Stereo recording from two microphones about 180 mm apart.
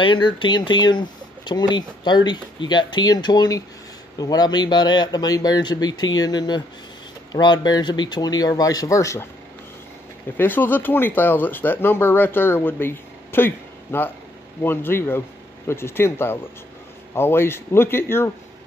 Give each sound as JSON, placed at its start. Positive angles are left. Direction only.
{"t": 0.0, "sound": "speech", "side_deg": 25}
{"t": 10.3, "sound": "speech", "side_deg": 10}